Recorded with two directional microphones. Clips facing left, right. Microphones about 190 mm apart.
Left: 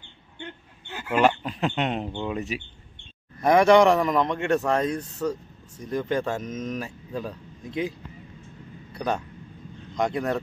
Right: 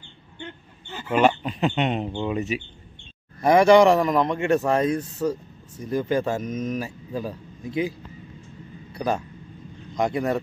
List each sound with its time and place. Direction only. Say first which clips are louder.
0.0 s a sound: right 1 dB; 15° left (ahead or behind)
1.1 s speech: right 2 dB; centre (ahead or behind)
8.9 s a man's voice: right 2 dB; 5° right (ahead or behind)